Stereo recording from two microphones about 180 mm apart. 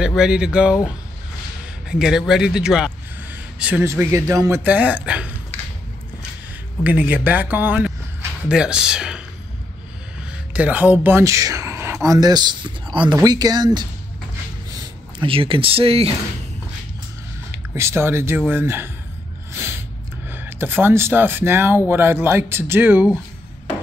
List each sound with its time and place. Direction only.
0.0 s speech: 5° right (ahead or behind)
1.9 s a man's voice: 5° right (ahead or behind)
6.8 s speech: 10° right (ahead or behind)
10.5 s speech: 10° right (ahead or behind); by 16.2 s 30° right (ahead or behind)
17.7 s speech: 15° right (ahead or behind)
19.5 s a sound: 15° right (ahead or behind)
20.2 s speech: 10° right (ahead or behind)